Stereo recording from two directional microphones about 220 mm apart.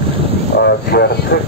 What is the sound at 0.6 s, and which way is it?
Speech, 50° left (ahead or behind).